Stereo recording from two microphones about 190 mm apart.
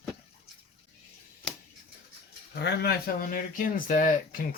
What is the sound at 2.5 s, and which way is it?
Speech, 60° left (ahead or behind).